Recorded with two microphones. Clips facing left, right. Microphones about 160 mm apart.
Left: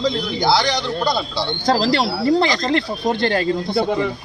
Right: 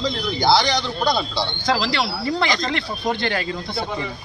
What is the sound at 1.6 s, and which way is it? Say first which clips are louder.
Speech: left 5 dB; 40° left (ahead or behind).